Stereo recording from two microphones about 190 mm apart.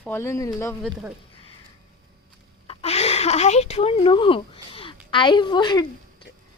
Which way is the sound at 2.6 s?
30° left (ahead or behind).